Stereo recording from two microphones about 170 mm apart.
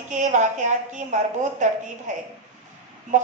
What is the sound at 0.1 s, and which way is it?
A woman's voice, 45° right (ahead or behind).